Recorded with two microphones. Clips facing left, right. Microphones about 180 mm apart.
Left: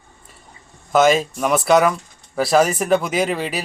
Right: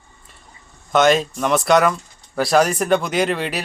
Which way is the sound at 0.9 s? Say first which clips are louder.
Even; 5° left (ahead or behind).